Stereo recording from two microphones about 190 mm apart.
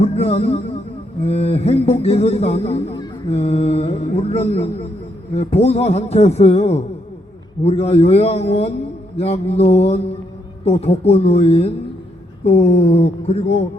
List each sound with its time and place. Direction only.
0.0 s a man's voice: 35° left (ahead or behind)